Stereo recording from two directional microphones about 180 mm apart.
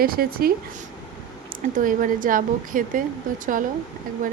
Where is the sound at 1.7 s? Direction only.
50° right (ahead or behind).